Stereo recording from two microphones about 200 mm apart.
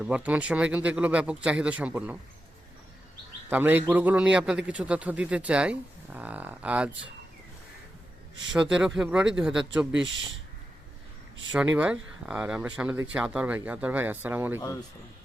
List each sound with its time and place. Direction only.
0.0 s a man's voice: 5° right (ahead or behind)
3.5 s a man's voice: 10° right (ahead or behind)
8.5 s speech: 5° right (ahead or behind)
9.9 s speech: 70° right (ahead or behind)
11.5 s a man's voice: 5° right (ahead or behind)